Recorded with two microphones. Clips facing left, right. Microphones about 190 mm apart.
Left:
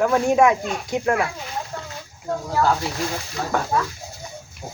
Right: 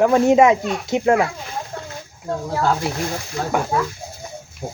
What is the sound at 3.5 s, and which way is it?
Speech, 10° right (ahead or behind).